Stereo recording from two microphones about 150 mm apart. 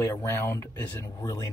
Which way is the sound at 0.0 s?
15° left (ahead or behind).